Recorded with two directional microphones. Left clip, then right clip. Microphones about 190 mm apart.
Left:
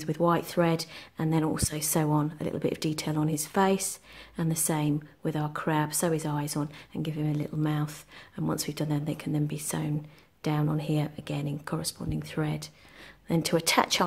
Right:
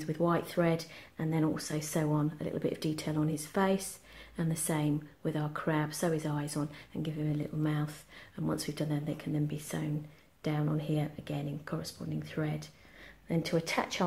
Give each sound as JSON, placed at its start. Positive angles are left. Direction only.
{"t": 0.0, "sound": "a woman's voice", "side_deg": 30}